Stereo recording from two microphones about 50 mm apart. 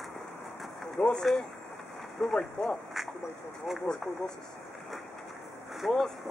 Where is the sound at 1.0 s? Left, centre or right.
Left.